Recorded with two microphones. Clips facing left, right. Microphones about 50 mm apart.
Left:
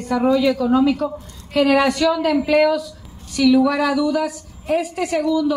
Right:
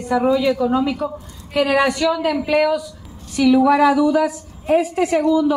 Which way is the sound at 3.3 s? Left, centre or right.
Centre.